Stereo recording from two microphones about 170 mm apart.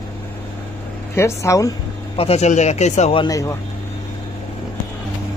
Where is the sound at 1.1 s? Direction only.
15° left (ahead or behind).